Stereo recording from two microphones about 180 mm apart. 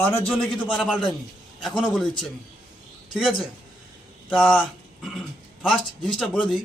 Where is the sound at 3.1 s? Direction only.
Centre (ahead or behind).